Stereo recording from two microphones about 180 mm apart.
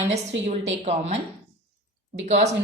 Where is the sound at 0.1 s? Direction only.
35° right (ahead or behind).